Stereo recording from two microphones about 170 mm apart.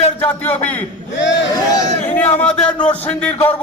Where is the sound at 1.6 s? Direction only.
20° left (ahead or behind).